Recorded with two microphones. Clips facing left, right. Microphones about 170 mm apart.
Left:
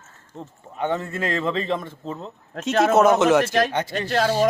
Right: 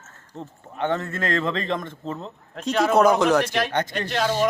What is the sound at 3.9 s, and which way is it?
Speech, 40° left (ahead or behind).